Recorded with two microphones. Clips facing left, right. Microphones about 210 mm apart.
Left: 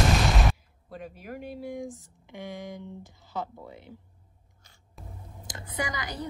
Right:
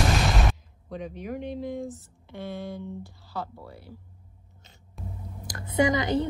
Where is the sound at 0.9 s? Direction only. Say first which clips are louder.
Right 6 dB; 5° left (ahead or behind).